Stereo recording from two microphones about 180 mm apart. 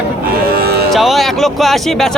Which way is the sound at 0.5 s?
60° right (ahead or behind).